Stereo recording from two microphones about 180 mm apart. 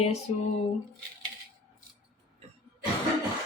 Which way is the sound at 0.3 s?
30° left (ahead or behind).